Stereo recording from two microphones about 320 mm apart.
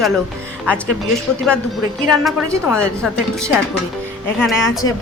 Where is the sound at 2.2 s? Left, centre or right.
Centre.